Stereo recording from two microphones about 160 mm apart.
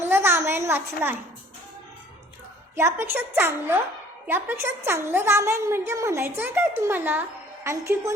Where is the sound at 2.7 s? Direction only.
15° right (ahead or behind).